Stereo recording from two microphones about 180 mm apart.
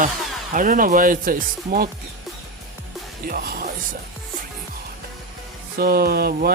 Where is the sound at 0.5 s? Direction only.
50° right (ahead or behind).